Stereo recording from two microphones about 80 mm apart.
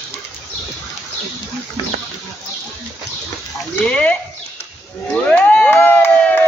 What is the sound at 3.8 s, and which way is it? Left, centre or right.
Speech, centre.